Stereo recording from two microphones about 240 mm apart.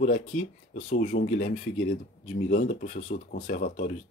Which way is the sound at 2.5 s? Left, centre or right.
Left.